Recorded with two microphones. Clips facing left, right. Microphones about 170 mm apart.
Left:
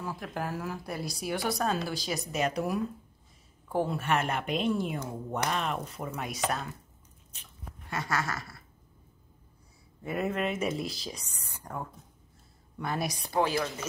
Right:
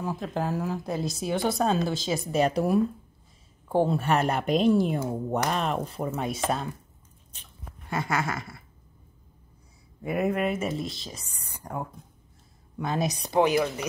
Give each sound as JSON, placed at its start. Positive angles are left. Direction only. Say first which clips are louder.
{"t": 0.0, "sound": "a woman's voice", "louder": "right 6 dB", "side_deg": -20}
{"t": 7.9, "sound": "speech", "louder": "right 4 dB", "side_deg": -25}
{"t": 10.0, "sound": "speech", "louder": "right 5 dB", "side_deg": -10}
{"t": 10.6, "sound": "speech", "louder": "right 1 dB", "side_deg": 0}
{"t": 11.2, "sound": "speech", "louder": "right 4 dB", "side_deg": -15}